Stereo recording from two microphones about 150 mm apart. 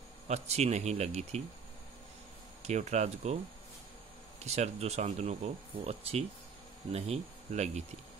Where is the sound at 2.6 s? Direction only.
50° right (ahead or behind).